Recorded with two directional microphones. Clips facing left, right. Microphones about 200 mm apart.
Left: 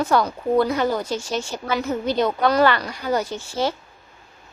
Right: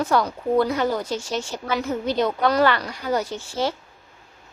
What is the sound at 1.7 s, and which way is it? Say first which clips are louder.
A woman's voice: left 1 dB; 45° left (ahead or behind).